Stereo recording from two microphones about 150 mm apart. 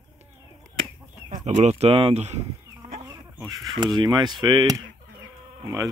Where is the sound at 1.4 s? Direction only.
50° right (ahead or behind).